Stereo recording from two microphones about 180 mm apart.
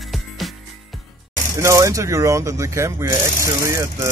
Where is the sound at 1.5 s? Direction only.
15° right (ahead or behind).